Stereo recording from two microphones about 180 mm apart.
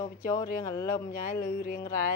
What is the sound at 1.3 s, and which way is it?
Speech, 50° left (ahead or behind).